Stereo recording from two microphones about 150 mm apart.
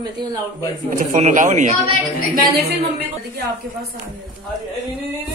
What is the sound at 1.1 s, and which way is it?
Speech, 55° right (ahead or behind).